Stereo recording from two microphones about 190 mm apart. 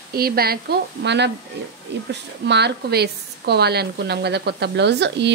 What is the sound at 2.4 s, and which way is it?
Speech, 65° right (ahead or behind).